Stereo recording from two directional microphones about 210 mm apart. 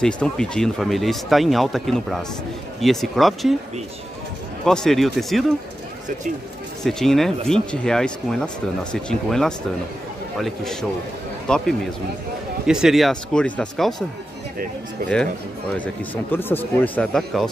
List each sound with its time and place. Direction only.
0.0 s speech: 5° left (ahead or behind)
4.6 s speech: centre (ahead or behind)
6.8 s speech: centre (ahead or behind)
15.7 s speech: 10° left (ahead or behind)